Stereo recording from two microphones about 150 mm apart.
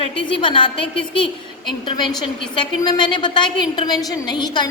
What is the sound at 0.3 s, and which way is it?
Speech, 35° left (ahead or behind).